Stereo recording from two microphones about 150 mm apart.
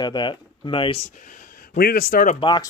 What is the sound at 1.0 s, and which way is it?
Speech, 60° left (ahead or behind).